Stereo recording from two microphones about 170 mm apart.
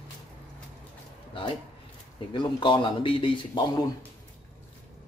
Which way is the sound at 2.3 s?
30° left (ahead or behind).